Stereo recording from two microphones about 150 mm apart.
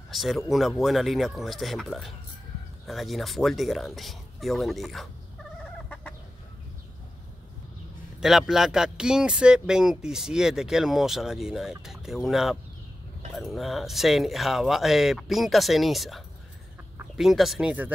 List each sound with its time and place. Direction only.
0.1 s speech: centre (ahead or behind)
5.6 s fowl: 5° left (ahead or behind)
8.2 s speech: centre (ahead or behind)